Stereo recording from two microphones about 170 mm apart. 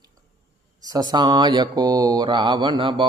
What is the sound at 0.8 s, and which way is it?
Mantra, 20° right (ahead or behind).